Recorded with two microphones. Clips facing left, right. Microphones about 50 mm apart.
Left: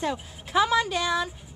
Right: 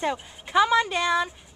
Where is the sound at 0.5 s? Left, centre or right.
Centre.